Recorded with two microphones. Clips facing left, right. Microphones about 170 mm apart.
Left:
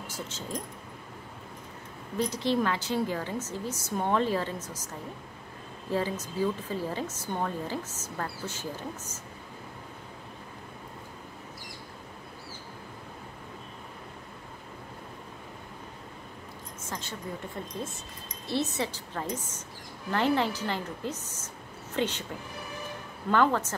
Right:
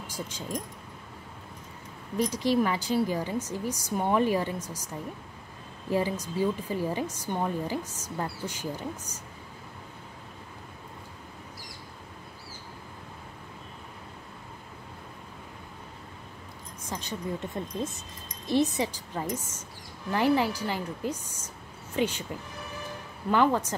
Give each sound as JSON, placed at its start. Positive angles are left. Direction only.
{"t": 0.0, "sound": "speech", "side_deg": -15}
{"t": 2.1, "sound": "a woman's voice", "side_deg": -10}
{"t": 16.8, "sound": "a sound", "side_deg": -15}
{"t": 18.5, "sound": "a woman's voice", "side_deg": -15}
{"t": 23.3, "sound": "a woman's voice", "side_deg": -10}